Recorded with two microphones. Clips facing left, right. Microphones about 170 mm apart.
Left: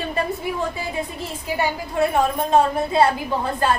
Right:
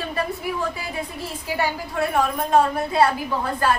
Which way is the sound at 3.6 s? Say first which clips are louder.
Left 1 dB; 25° left (ahead or behind).